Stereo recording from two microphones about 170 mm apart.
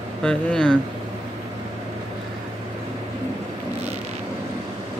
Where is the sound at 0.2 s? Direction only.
5° left (ahead or behind).